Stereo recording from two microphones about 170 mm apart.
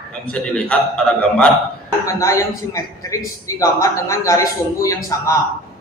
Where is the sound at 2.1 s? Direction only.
20° left (ahead or behind).